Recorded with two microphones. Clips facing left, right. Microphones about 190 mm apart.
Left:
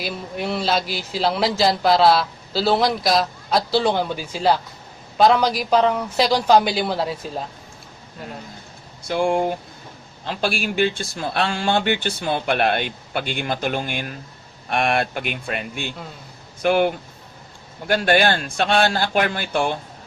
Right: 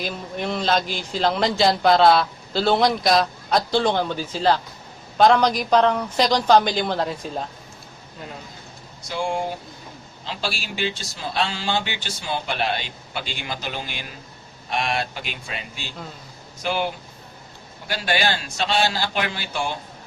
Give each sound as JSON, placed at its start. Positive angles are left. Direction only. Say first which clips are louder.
{"t": 0.0, "sound": "a man's voice", "louder": "left 1 dB", "side_deg": 5}
{"t": 9.0, "sound": "a man's voice", "louder": "left 6 dB", "side_deg": 55}